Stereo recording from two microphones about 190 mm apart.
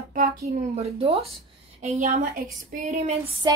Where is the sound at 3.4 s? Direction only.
20° right (ahead or behind).